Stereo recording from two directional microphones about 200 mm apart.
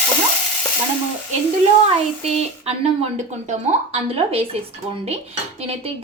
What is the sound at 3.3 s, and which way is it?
A woman's voice, 35° right (ahead or behind).